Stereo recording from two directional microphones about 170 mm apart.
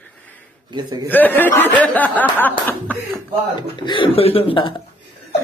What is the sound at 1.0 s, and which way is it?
Speech, 10° left (ahead or behind).